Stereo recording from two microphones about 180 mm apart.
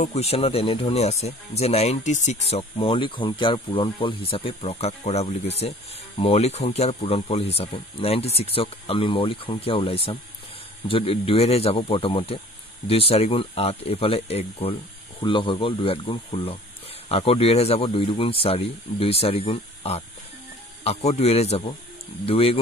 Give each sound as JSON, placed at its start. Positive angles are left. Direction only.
{"t": 0.0, "sound": "speech", "side_deg": 35}